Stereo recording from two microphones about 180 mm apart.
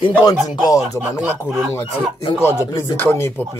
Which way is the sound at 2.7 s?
10° left (ahead or behind).